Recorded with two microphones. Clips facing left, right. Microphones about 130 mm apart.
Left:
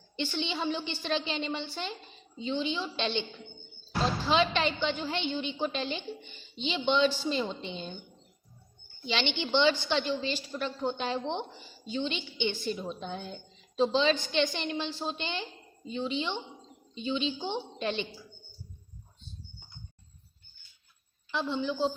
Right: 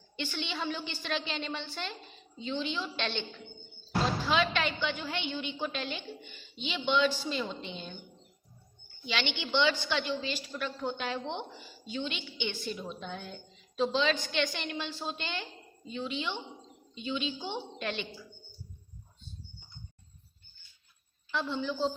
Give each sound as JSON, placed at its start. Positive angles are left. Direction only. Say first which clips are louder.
{"t": 0.2, "sound": "a woman's voice", "louder": "left 4 dB", "side_deg": 20}
{"t": 4.3, "sound": "a woman's voice", "louder": "left 5 dB", "side_deg": 25}
{"t": 9.0, "sound": "a woman's voice", "louder": "left 3 dB", "side_deg": 25}
{"t": 21.3, "sound": "a woman's voice", "louder": "left 2 dB", "side_deg": 20}